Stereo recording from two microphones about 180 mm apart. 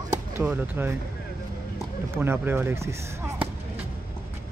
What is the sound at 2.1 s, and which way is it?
Speech, 15° right (ahead or behind).